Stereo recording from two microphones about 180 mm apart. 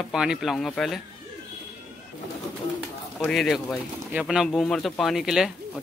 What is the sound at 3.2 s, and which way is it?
Speech, 5° left (ahead or behind).